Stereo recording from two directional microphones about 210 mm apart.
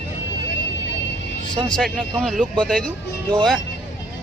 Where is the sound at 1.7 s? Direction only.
5° left (ahead or behind).